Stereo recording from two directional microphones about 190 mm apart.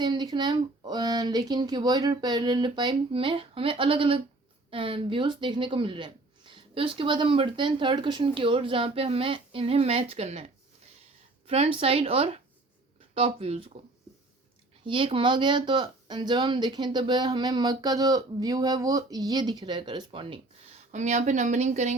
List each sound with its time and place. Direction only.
0.0 s speech: 20° right (ahead or behind)
14.8 s speech: 25° right (ahead or behind)
20.9 s speech: 40° right (ahead or behind)